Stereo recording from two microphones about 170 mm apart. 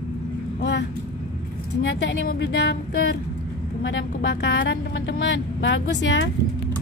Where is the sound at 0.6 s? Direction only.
90° left.